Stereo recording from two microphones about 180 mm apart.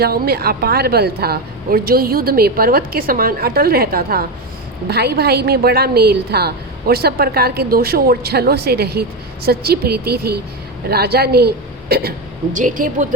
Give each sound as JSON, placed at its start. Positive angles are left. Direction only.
{"t": 0.0, "sound": "a woman's voice", "side_deg": -60}
{"t": 12.5, "sound": "speech", "side_deg": -45}